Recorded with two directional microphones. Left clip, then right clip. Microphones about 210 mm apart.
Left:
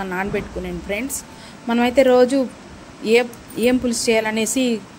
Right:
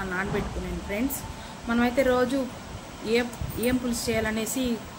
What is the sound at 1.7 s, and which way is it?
Speech, 35° left (ahead or behind).